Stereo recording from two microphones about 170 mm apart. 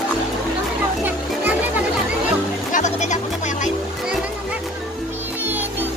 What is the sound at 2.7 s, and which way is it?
Music, 45° left (ahead or behind).